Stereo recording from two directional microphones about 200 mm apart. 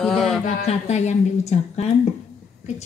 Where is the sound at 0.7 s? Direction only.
35° left (ahead or behind).